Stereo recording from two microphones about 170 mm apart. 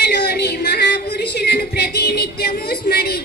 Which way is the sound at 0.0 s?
70° left (ahead or behind).